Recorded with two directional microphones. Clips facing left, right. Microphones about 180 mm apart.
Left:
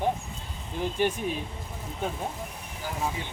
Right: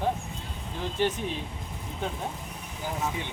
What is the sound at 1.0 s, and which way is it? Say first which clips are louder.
Speech: even; 15° left (ahead or behind).